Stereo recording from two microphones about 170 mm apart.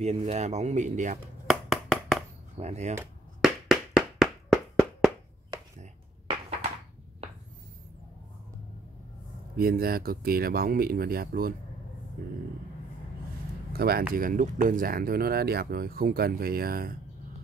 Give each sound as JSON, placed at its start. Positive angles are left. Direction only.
{"t": 0.0, "sound": "speech", "side_deg": -40}
{"t": 1.5, "sound": "clapping", "side_deg": 0}
{"t": 2.5, "sound": "speech", "side_deg": -40}
{"t": 3.3, "sound": "clapping", "side_deg": 0}
{"t": 9.6, "sound": "speech", "side_deg": -60}
{"t": 13.7, "sound": "speech", "side_deg": -65}
{"t": 14.1, "sound": "speech", "side_deg": -55}